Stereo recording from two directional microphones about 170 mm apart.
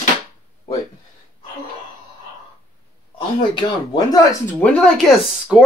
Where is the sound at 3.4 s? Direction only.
25° left (ahead or behind).